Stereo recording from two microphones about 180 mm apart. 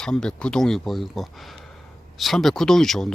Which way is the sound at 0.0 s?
5° left (ahead or behind).